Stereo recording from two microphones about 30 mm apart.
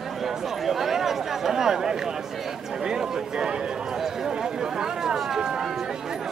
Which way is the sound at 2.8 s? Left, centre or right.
Right.